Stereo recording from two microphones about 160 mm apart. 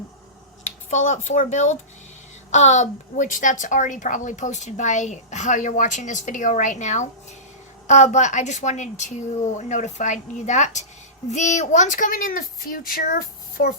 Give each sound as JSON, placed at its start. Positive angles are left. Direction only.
{"t": 0.9, "sound": "a woman's voice", "side_deg": 50}